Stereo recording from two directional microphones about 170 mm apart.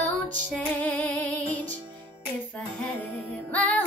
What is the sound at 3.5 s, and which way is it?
Music, 10° left (ahead or behind).